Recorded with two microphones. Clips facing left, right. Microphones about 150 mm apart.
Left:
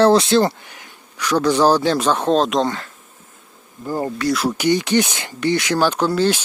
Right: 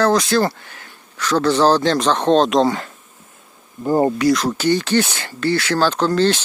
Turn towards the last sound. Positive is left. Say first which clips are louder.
# right 1 dB
turn(degrees=10)  # may be behind; listen again after turning